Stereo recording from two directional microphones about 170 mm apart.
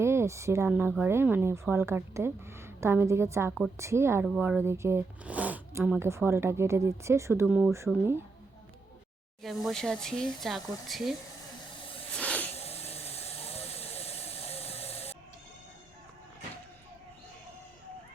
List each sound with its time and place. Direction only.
0.0 s speech: 15° right (ahead or behind)
9.4 s speech: centre (ahead or behind)
12.1 s hiss: 10° left (ahead or behind)
12.5 s steam: 35° left (ahead or behind)